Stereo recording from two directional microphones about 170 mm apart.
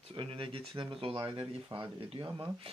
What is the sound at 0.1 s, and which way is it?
Speech, 30° right (ahead or behind).